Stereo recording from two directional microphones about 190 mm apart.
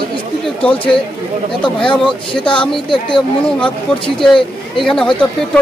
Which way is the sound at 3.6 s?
5° left (ahead or behind).